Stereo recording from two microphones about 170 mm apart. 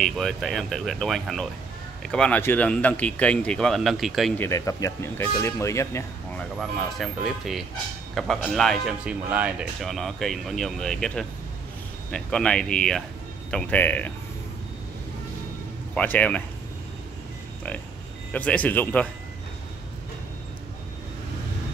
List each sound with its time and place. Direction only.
0.0 s speech: centre (ahead or behind)
4.4 s speech: 20° left (ahead or behind)
7.0 s speech: centre (ahead or behind)
15.9 s speech: 10° left (ahead or behind)
18.3 s speech: 10° left (ahead or behind)